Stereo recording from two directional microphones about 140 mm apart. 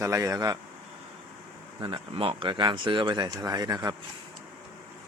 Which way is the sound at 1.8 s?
40° right (ahead or behind).